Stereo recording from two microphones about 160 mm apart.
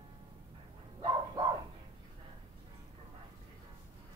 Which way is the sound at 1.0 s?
30° right (ahead or behind).